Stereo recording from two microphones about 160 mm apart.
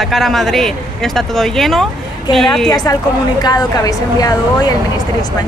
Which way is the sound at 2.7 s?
25° left (ahead or behind).